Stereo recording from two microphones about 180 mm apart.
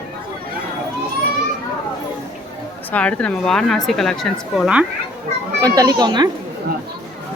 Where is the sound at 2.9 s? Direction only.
5° left (ahead or behind).